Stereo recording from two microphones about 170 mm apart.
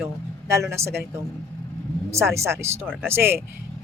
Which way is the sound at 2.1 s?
15° right (ahead or behind).